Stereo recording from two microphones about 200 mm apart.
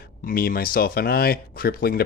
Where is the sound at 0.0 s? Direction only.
50° left (ahead or behind).